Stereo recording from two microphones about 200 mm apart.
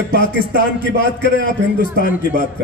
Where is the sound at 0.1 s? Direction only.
45° left (ahead or behind).